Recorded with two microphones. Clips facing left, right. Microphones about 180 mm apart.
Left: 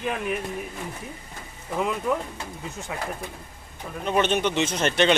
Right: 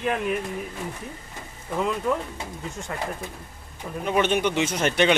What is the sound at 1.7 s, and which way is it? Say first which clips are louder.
Speech: right 1 dB; 5° left (ahead or behind).